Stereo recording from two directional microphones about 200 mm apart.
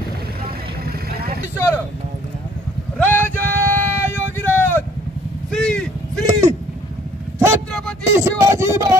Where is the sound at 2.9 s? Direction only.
10° left (ahead or behind).